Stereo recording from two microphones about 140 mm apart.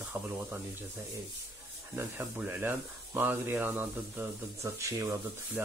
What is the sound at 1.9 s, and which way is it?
Speech, 15° right (ahead or behind).